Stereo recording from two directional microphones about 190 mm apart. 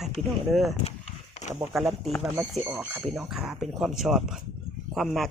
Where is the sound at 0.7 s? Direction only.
35° left (ahead or behind).